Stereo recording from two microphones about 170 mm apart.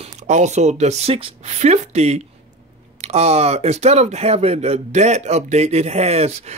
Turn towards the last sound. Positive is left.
turn(degrees=-40)  # may be behind; listen again after turning